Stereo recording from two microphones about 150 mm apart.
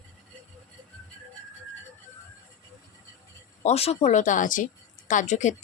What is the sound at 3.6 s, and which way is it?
Speech, 45° left (ahead or behind).